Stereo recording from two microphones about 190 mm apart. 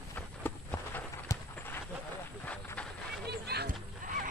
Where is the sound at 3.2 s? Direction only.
60° right (ahead or behind).